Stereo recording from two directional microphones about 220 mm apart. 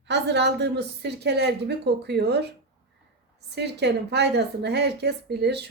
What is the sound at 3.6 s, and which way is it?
Speech, 50° right (ahead or behind).